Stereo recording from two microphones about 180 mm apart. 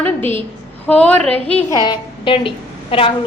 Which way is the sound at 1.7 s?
25° left (ahead or behind).